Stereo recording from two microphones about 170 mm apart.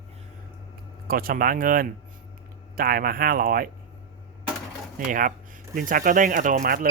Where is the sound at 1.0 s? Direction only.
60° right (ahead or behind).